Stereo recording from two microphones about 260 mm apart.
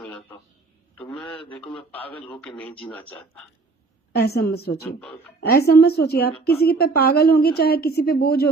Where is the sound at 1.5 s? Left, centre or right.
Centre.